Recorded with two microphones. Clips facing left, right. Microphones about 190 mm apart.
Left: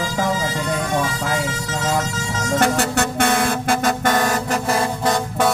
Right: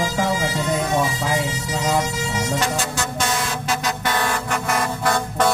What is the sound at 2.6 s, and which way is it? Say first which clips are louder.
Music: left 6 dB; 60° left (ahead or behind).